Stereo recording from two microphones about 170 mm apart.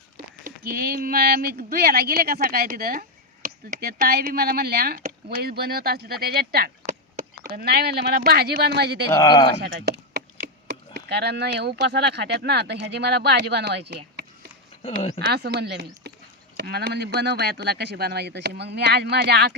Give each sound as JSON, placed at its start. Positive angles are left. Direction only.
{"t": 0.4, "sound": "speech", "side_deg": -60}
{"t": 9.2, "sound": "speech", "side_deg": 25}
{"t": 9.8, "sound": "speech", "side_deg": -65}
{"t": 14.8, "sound": "speech", "side_deg": 40}
{"t": 15.3, "sound": "speech", "side_deg": -70}